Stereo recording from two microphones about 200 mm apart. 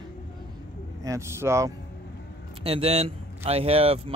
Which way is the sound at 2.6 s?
30° right (ahead or behind).